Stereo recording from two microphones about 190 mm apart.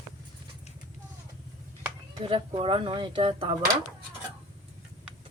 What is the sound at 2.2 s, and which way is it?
Speech, 30° right (ahead or behind).